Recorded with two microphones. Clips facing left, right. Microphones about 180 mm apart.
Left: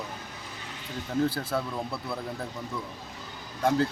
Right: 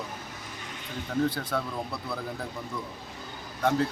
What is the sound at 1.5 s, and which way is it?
Speech, 5° left (ahead or behind).